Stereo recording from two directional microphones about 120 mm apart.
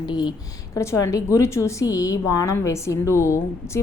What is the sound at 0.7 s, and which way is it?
A woman's voice, 25° left (ahead or behind).